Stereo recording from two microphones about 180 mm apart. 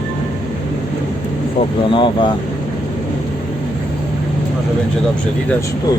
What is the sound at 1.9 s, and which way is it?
Speech, 25° left (ahead or behind).